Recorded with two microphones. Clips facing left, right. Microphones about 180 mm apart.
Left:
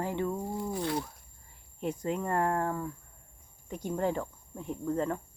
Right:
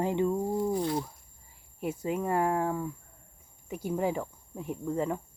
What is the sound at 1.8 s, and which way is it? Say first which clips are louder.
Speech: right 1 dB; 5° right (ahead or behind).